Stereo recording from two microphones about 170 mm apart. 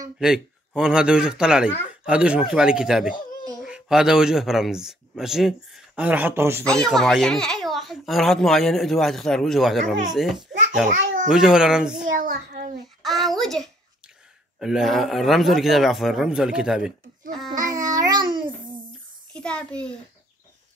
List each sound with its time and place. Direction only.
0.2 s speech: 5° right (ahead or behind)
6.6 s speech: 5° left (ahead or behind)
12.1 s a child's voice: 55° right (ahead or behind)
13.0 s a sound: centre (ahead or behind)
14.6 s speech: centre (ahead or behind)
17.5 s babbling: 20° right (ahead or behind)
19.3 s speech: 5° left (ahead or behind)